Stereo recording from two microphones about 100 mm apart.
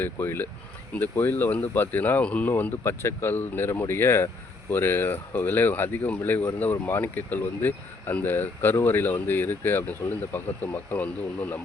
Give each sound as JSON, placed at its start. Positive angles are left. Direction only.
{"t": 0.0, "sound": "speech", "side_deg": 20}